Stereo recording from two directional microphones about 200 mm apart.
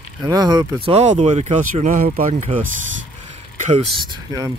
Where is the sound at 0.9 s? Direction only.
35° right (ahead or behind).